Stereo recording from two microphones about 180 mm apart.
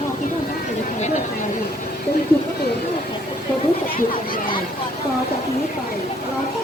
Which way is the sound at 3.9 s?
50° left (ahead or behind).